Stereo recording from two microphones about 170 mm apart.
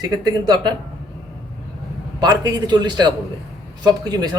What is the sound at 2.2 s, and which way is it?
Speech, 25° right (ahead or behind).